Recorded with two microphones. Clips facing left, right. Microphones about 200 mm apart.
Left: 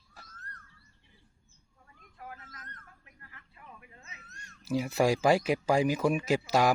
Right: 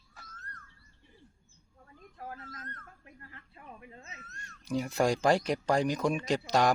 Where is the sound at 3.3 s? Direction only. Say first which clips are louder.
Right 1 dB; 30° right (ahead or behind).